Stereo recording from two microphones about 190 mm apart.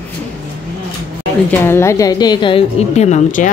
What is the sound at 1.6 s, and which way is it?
A woman's voice, 15° left (ahead or behind).